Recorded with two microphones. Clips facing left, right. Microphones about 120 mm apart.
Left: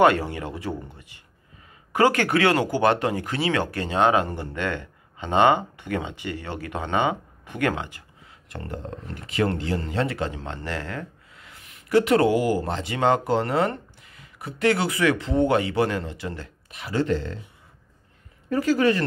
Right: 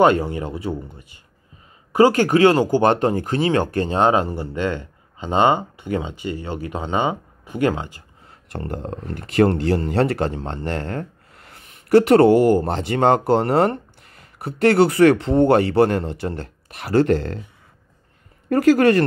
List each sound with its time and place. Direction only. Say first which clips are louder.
0.3 s speech: right 5 dB; 30° right (ahead or behind)
2.0 s speech: right 5 dB; 35° right (ahead or behind); by 17.4 s 60° right (ahead or behind)
18.5 s speech: right 6 dB; 60° right (ahead or behind)